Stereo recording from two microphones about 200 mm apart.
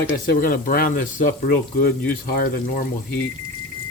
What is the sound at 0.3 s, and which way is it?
Speech, 45° left (ahead or behind).